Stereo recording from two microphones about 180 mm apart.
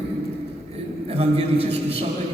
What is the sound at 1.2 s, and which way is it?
Speech, 35° right (ahead or behind).